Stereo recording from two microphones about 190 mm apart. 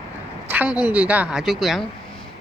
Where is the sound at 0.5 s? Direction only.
10° right (ahead or behind).